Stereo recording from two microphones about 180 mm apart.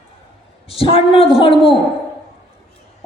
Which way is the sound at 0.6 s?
30° left (ahead or behind).